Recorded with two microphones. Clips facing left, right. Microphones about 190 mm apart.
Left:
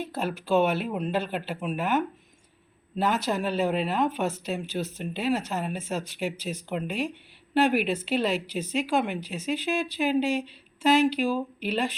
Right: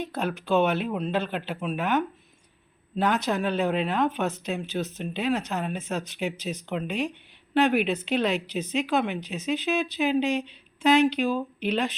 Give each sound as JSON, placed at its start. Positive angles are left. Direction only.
{"t": 0.0, "sound": "speech", "side_deg": 5}